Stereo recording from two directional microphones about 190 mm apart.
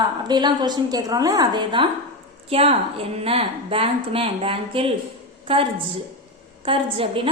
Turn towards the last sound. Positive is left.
turn(degrees=-30)  # may be behind; listen again after turning